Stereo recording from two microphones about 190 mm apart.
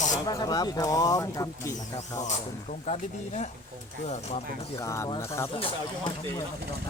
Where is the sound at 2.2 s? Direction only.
40° left (ahead or behind).